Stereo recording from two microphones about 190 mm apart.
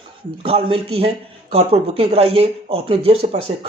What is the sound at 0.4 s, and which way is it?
Speech, 30° right (ahead or behind).